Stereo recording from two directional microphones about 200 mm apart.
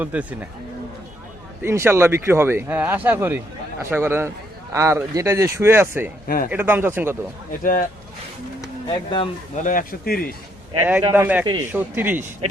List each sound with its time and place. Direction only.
0.0 s speech: 5° right (ahead or behind)
1.6 s speech: 10° right (ahead or behind)
6.2 s a man's voice: 45° left (ahead or behind)
6.5 s speech: 10° right (ahead or behind)
7.6 s a man's voice: 45° left (ahead or behind)
8.6 s speech: 25° left (ahead or behind)
9.6 s a man's voice: 40° left (ahead or behind)
10.8 s speech: 10° right (ahead or behind)
11.4 s a man's voice: 20° right (ahead or behind)
11.7 s speech: 10° right (ahead or behind)